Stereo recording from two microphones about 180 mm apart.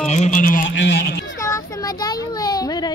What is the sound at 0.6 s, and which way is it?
Speech, 85° left.